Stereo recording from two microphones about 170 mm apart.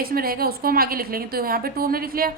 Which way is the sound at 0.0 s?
60° right (ahead or behind).